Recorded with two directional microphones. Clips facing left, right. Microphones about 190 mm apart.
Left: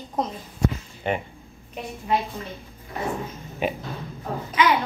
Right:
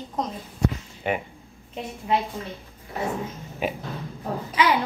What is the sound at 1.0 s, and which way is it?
Speech, 10° right (ahead or behind).